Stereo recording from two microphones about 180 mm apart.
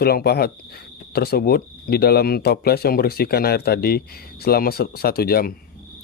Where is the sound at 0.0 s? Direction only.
60° left (ahead or behind).